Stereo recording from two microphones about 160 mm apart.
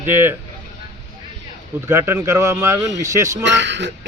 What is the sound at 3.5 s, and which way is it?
Speech, 90° right.